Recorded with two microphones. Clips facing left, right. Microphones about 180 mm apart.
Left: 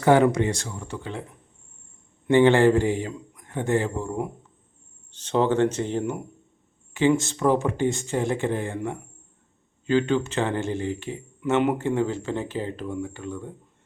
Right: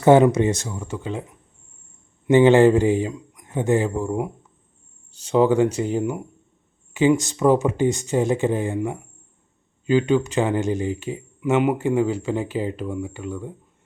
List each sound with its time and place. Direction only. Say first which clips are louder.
0.0 s speech: right 4 dB; 20° right (ahead or behind)
2.2 s a man's voice: right 3 dB; 20° right (ahead or behind)